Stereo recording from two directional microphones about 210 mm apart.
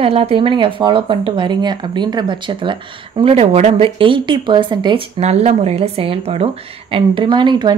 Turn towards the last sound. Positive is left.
turn(degrees=-20)  # may be behind; listen again after turning